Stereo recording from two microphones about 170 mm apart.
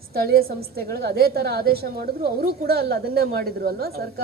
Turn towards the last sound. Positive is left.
turn(degrees=-65)  # may be behind; listen again after turning